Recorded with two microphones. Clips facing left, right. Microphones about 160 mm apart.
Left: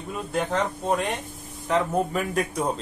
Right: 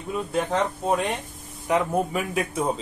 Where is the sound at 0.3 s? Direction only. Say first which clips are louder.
Even; centre (ahead or behind).